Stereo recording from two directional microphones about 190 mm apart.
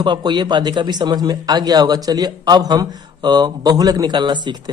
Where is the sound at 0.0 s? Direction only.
25° right (ahead or behind).